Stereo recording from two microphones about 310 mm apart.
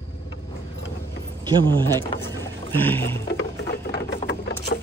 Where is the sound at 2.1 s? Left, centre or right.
Centre.